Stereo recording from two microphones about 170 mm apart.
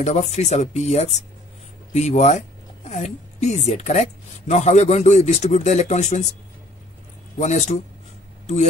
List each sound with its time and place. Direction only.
0.0 s speech: 40° left (ahead or behind)
7.3 s speech: 45° left (ahead or behind)